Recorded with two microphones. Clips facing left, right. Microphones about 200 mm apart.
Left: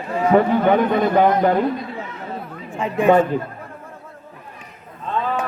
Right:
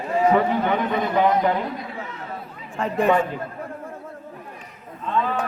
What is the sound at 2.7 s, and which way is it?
Speech, centre (ahead or behind).